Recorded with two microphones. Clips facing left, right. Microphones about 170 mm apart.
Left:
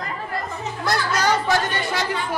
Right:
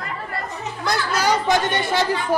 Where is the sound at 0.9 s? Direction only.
10° right (ahead or behind).